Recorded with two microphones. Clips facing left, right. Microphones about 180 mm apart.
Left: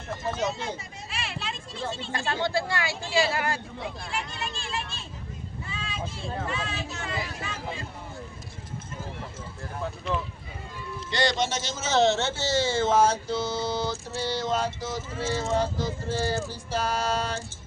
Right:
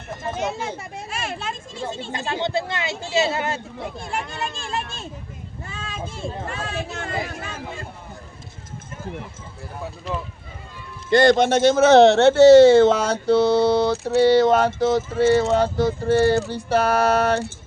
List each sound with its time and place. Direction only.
0.2 s speech: 55° right (ahead or behind)
2.1 s speech: 20° right (ahead or behind)
4.0 s speech: 50° right (ahead or behind)
5.6 s vehicle: 45° right (ahead or behind)
6.5 s speech: 50° right (ahead or behind)
11.1 s a man's voice: 55° right (ahead or behind)